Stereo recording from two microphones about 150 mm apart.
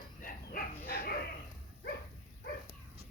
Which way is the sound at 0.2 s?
75° left (ahead or behind).